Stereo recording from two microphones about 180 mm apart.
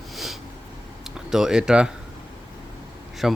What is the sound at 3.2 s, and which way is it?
Speech, centre (ahead or behind).